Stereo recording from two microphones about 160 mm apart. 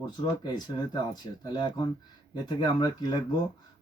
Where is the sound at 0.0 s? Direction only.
25° left (ahead or behind).